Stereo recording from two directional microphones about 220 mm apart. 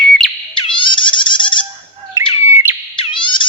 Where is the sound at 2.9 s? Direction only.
20° left (ahead or behind).